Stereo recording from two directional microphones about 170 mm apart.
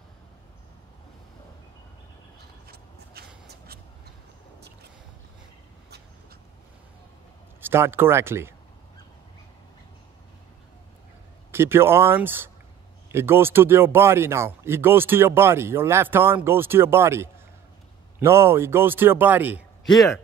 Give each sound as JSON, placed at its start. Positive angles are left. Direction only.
{"t": 3.4, "sound": "a sound", "side_deg": -65}
{"t": 7.6, "sound": "speech", "side_deg": -15}
{"t": 11.5, "sound": "speech", "side_deg": -15}
{"t": 19.8, "sound": "speech", "side_deg": 0}